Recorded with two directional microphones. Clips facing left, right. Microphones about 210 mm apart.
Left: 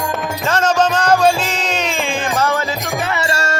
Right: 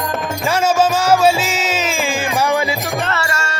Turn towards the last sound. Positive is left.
turn(degrees=35)  # may be behind; listen again after turning